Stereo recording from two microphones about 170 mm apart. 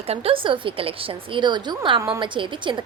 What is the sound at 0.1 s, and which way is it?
A woman's voice, 35° right (ahead or behind).